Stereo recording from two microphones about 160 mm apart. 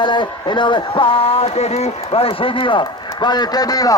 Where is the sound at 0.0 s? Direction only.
30° left (ahead or behind).